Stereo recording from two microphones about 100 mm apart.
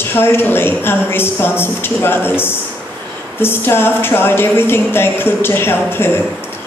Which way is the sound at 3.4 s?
20° left (ahead or behind).